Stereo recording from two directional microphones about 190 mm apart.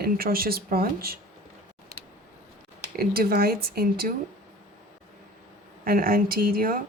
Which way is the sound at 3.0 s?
55° right (ahead or behind).